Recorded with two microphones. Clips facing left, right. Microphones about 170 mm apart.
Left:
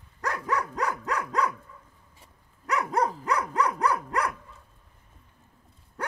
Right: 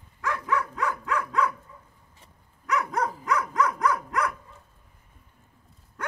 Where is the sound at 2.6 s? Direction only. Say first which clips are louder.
Left 1 dB; 35° left (ahead or behind).